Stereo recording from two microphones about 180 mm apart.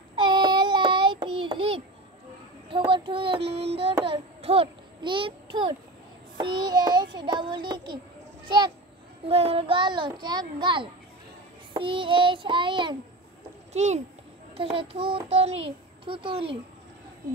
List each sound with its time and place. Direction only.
0.1 s child singing: 25° right (ahead or behind)
4.0 s a child's voice: 30° right (ahead or behind)
6.4 s child singing: 25° right (ahead or behind)
9.3 s child singing: 35° right (ahead or behind)
13.7 s child singing: 40° right (ahead or behind)